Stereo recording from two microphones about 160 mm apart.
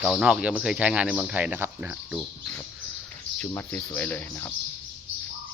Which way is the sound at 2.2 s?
5° left (ahead or behind).